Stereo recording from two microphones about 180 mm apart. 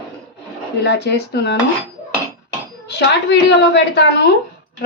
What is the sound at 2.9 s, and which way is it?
A woman's voice, 70° left (ahead or behind).